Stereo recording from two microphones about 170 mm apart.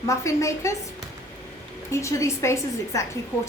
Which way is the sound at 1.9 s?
15° left (ahead or behind).